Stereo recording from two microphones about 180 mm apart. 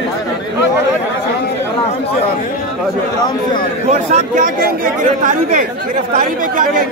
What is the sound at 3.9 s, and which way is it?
Speech, 40° right (ahead or behind).